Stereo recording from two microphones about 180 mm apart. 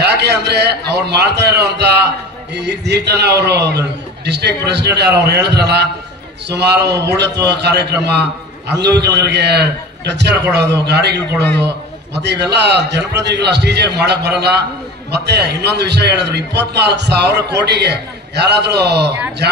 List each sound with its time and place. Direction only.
0.0 s a man's voice: 65° right (ahead or behind)